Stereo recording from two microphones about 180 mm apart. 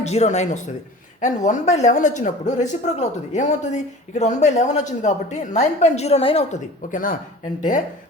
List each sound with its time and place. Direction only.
0.0 s speech: 40° left (ahead or behind)
6.9 s speech: 50° left (ahead or behind)